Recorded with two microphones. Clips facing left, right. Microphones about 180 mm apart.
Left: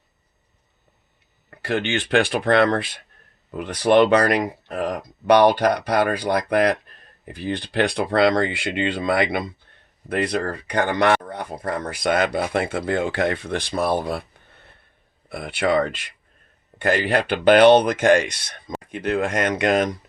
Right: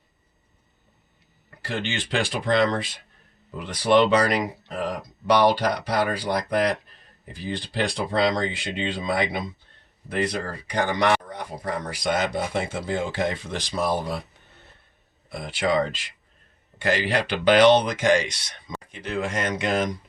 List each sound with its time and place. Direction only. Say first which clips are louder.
1.5 s speech: left 6 dB; 60° left (ahead or behind)